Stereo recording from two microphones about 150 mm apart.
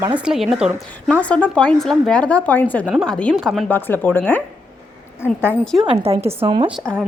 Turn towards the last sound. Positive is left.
turn(degrees=-10)  # may be behind; listen again after turning